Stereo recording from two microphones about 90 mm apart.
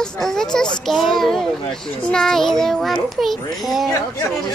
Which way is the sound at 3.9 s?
35° left (ahead or behind).